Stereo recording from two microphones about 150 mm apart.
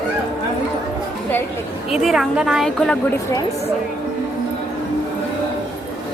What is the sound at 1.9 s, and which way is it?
A woman's voice, centre (ahead or behind).